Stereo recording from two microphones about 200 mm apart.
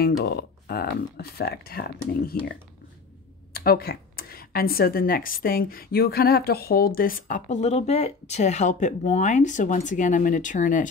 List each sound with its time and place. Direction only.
0.2 s speech: 50° left (ahead or behind)
3.5 s speech: 50° left (ahead or behind)